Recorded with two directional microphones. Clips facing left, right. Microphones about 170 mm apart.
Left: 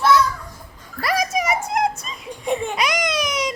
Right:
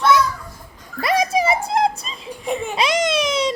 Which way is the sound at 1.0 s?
25° right (ahead or behind).